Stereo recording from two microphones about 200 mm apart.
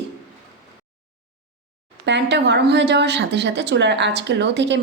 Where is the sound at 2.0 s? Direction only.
60° right (ahead or behind).